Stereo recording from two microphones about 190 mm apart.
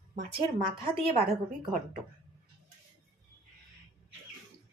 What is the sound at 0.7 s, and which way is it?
Speech, 30° right (ahead or behind).